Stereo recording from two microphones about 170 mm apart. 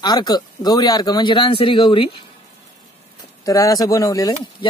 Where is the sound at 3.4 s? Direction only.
20° left (ahead or behind).